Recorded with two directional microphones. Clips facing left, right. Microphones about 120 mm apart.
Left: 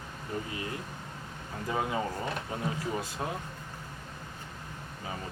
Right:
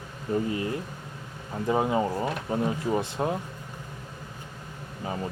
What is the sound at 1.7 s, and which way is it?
Speech, 25° right (ahead or behind).